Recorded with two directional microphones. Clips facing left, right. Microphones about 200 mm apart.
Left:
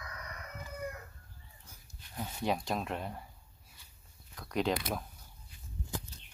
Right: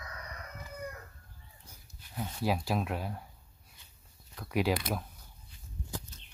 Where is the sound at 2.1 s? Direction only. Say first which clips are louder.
Right 1 dB; centre (ahead or behind).